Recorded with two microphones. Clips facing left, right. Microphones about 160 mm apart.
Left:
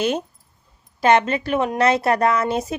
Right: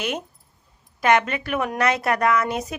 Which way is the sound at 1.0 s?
30° left (ahead or behind).